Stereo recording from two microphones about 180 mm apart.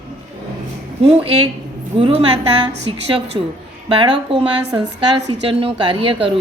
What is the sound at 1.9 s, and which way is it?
Speech, 30° right (ahead or behind).